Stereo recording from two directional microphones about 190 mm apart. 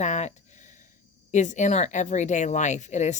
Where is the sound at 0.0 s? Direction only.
35° left (ahead or behind).